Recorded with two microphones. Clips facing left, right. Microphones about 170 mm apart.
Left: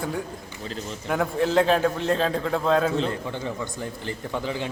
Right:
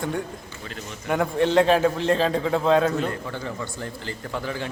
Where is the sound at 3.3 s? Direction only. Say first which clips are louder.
Left 1 dB; 15° left (ahead or behind).